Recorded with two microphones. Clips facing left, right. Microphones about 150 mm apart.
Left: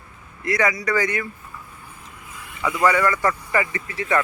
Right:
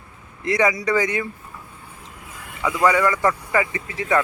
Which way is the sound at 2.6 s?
15° right (ahead or behind).